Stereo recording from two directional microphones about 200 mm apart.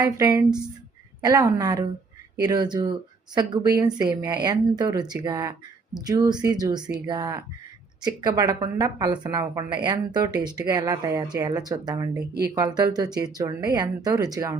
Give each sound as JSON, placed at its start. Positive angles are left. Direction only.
{"t": 0.0, "sound": "a woman's voice", "side_deg": -15}